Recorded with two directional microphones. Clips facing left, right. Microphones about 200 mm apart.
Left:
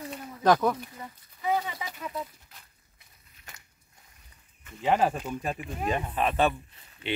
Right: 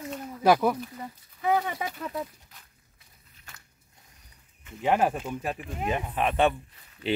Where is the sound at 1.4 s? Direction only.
55° right (ahead or behind).